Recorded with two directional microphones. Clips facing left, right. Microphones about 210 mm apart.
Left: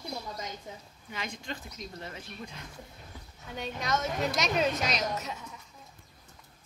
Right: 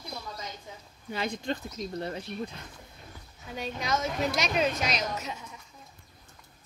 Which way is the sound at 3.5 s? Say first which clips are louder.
Right 1 dB; centre (ahead or behind).